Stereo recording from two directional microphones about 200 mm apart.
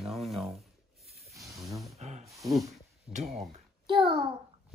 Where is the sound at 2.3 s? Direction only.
15° right (ahead or behind).